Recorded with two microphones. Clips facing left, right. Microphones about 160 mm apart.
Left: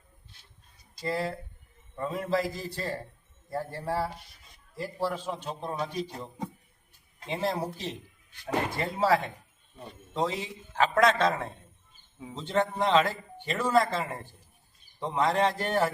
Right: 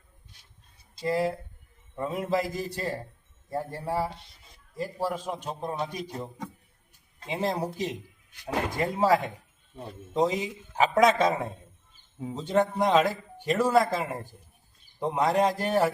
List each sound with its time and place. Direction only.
1.0 s speech: 15° right (ahead or behind)
7.3 s speech: 15° right (ahead or behind)